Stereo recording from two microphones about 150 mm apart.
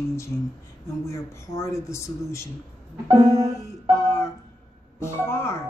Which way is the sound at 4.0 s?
20° left (ahead or behind).